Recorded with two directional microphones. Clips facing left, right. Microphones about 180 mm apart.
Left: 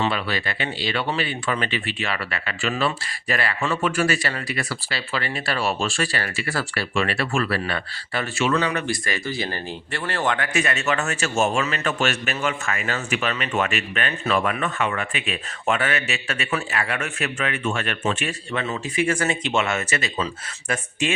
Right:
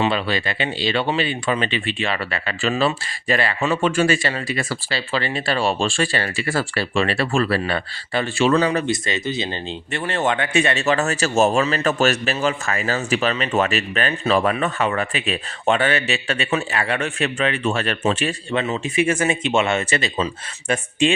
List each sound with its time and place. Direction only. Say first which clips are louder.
0.0 s speech: right 4 dB; 25° right (ahead or behind)
8.9 s speech: right 4 dB; 20° right (ahead or behind)
18.5 s speech: right 4 dB; 20° right (ahead or behind)